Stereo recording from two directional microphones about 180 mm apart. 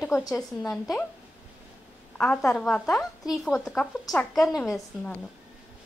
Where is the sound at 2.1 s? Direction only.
5° left (ahead or behind).